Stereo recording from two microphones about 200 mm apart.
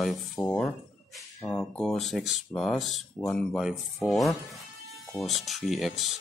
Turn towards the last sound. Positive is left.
turn(degrees=0)  # may be behind; listen again after turning